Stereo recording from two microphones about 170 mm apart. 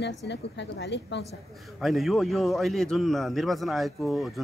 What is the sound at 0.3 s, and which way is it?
Speech, 90° left.